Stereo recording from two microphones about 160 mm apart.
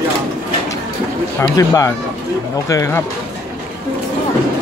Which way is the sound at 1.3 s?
20° left (ahead or behind).